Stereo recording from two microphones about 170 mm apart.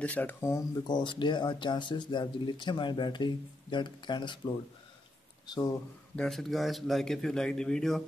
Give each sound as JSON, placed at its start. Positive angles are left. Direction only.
{"t": 0.0, "sound": "speech", "side_deg": 10}
{"t": 5.5, "sound": "speech", "side_deg": 20}
{"t": 6.1, "sound": "speech", "side_deg": 5}